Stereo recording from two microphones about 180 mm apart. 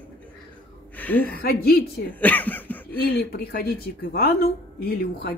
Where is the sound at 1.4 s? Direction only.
60° left (ahead or behind).